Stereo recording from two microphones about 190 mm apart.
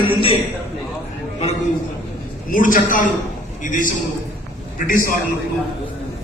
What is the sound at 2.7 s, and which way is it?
A man's voice, 45° left (ahead or behind).